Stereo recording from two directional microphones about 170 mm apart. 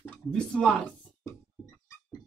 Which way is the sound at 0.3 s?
5° left (ahead or behind).